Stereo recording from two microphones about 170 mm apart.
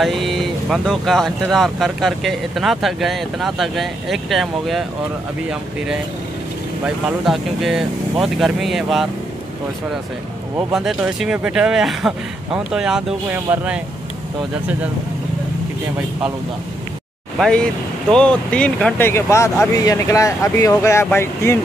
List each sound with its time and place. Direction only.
0.0 s speech: centre (ahead or behind)
7.1 s speech: centre (ahead or behind)
10.7 s speech: centre (ahead or behind)
18.1 s speech: 5° left (ahead or behind)